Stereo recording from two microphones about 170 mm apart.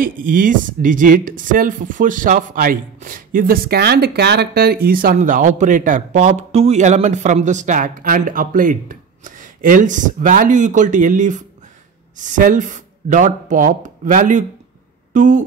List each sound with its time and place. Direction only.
0.0 s speech: 55° right (ahead or behind)